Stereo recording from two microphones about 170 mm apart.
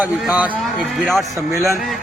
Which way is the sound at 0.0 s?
10° right (ahead or behind).